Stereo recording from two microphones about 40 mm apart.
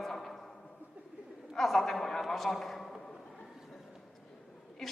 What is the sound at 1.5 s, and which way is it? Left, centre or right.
A man's voice, centre.